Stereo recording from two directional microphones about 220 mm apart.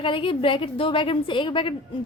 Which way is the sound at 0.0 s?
25° left (ahead or behind).